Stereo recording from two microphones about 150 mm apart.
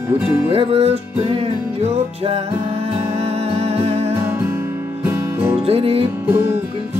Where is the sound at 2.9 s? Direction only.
40° right (ahead or behind).